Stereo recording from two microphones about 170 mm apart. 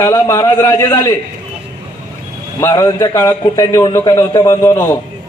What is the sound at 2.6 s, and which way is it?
A man's voice, 20° left (ahead or behind).